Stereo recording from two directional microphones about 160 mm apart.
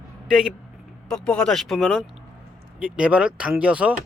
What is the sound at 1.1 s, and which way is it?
Speech, 5° left (ahead or behind).